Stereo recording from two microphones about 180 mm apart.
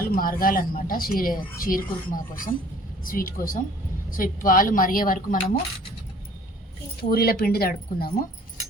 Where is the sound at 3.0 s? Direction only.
50° left (ahead or behind).